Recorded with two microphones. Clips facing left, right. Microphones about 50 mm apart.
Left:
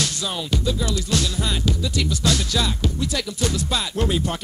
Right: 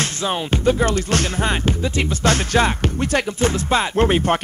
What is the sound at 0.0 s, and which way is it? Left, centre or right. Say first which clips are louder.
Music: right 4 dB; right.